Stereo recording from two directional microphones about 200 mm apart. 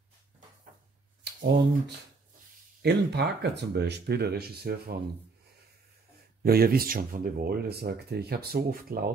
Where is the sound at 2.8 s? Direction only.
55° right (ahead or behind).